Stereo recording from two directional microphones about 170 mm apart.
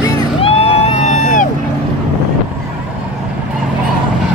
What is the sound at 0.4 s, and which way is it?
Music, 35° left (ahead or behind).